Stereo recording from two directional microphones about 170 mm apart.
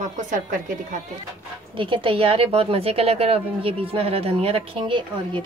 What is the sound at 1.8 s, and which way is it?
A woman's voice, 30° right (ahead or behind).